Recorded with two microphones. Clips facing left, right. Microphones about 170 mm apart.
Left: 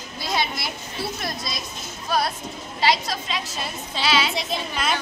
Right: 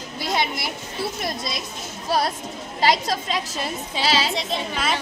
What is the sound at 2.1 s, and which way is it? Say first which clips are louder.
A woman's voice: right 1 dB; 35° right (ahead or behind).